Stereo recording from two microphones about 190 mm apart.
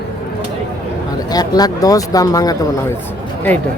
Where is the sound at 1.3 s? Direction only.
20° left (ahead or behind).